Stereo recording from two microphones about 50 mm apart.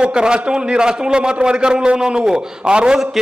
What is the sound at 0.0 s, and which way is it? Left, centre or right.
A man's voice, centre.